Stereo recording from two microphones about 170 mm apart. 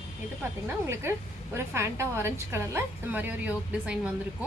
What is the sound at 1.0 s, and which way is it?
A woman's voice, 15° right (ahead or behind).